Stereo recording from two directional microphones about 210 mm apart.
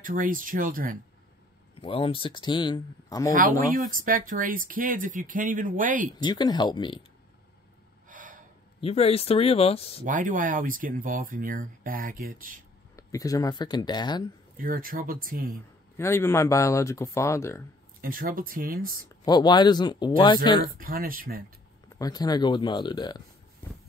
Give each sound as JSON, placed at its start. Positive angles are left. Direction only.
{"t": 0.0, "sound": "speech", "side_deg": -40}
{"t": 1.8, "sound": "speech", "side_deg": 25}
{"t": 3.7, "sound": "speech", "side_deg": -40}
{"t": 6.1, "sound": "speech", "side_deg": 20}
{"t": 8.1, "sound": "gasp", "side_deg": -40}
{"t": 8.8, "sound": "speech", "side_deg": 30}
{"t": 10.0, "sound": "speech", "side_deg": -40}
{"t": 12.9, "sound": "speech", "side_deg": 15}
{"t": 14.6, "sound": "speech", "side_deg": -45}
{"t": 16.0, "sound": "speech", "side_deg": 10}
{"t": 18.0, "sound": "speech", "side_deg": -40}
{"t": 19.2, "sound": "speech", "side_deg": 20}
{"t": 20.8, "sound": "speech", "side_deg": -45}
{"t": 21.8, "sound": "speech", "side_deg": 20}